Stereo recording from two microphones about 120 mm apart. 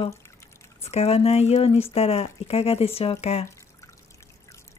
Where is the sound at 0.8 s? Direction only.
60° left (ahead or behind).